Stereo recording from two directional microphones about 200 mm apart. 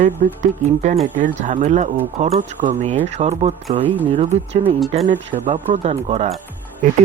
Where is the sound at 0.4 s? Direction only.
35° right (ahead or behind).